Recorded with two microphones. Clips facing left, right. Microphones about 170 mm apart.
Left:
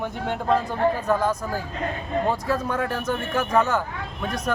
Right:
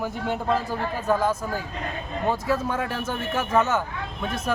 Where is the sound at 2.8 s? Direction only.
25° right (ahead or behind).